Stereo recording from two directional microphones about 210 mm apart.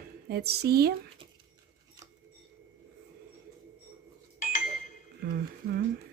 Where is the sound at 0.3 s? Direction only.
50° right (ahead or behind).